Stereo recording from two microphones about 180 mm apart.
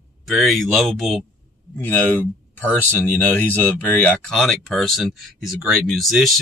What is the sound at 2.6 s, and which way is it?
Speech, 10° left (ahead or behind).